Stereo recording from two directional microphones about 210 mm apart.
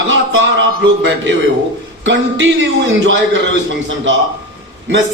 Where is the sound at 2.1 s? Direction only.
60° right (ahead or behind).